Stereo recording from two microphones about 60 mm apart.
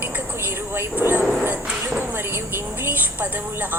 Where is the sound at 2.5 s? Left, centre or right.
Right.